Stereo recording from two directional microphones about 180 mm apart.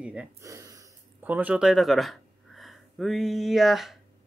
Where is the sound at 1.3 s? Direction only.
10° right (ahead or behind).